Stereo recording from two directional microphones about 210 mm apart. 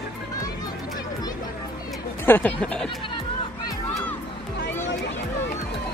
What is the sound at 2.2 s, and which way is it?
Speech, 10° left (ahead or behind).